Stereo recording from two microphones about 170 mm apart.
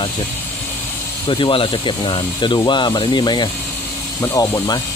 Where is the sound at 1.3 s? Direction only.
30° left (ahead or behind).